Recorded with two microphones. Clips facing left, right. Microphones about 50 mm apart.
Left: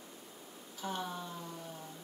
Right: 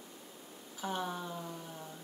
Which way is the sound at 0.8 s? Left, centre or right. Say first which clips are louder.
Right 2 dB; centre.